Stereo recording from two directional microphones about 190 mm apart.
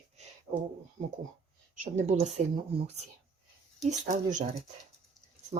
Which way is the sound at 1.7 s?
40° right (ahead or behind).